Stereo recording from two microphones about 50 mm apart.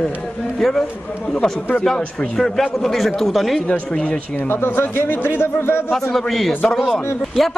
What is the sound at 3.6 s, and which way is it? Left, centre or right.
Speech, left.